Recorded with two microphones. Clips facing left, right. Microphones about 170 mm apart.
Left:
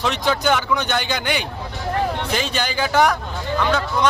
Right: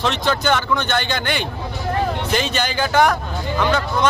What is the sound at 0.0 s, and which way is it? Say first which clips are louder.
A man's voice: even; 5° left (ahead or behind).